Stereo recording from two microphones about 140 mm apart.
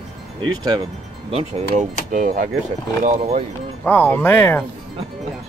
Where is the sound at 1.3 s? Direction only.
50° right (ahead or behind); by 2.5 s 75° right (ahead or behind).